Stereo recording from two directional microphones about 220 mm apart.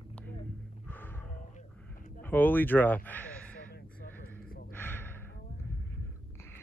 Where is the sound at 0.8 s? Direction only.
10° left (ahead or behind).